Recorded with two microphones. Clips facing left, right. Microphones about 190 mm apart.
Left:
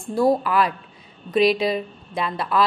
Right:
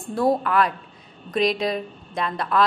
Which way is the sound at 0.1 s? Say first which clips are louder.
Left 2 dB; centre (ahead or behind).